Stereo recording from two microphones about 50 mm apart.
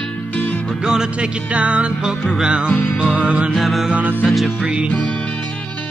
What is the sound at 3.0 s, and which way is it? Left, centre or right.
Music, right.